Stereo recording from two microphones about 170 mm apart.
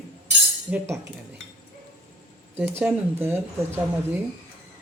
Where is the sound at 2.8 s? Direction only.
10° right (ahead or behind).